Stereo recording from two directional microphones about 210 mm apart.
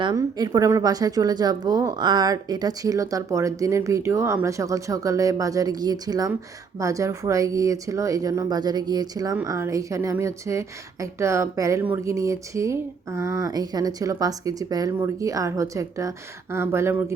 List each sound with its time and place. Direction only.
0.0 s speech: 20° right (ahead or behind)